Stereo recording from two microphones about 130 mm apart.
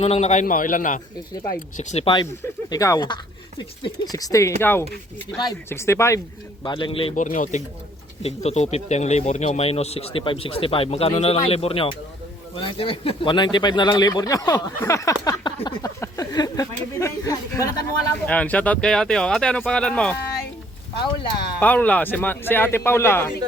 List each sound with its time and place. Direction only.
0.0 s a man's voice: 55° left (ahead or behind); by 1.0 s 90° left
1.5 s speech: 70° left (ahead or behind)
2.6 s speech: 25° left (ahead or behind)
6.7 s speech: 40° left (ahead or behind)
7.2 s a man's voice: 80° left
8.2 s speech: 55° left (ahead or behind); by 18.1 s 25° left (ahead or behind)
18.3 s speech: 10° left (ahead or behind)
21.6 s speech: 10° left (ahead or behind)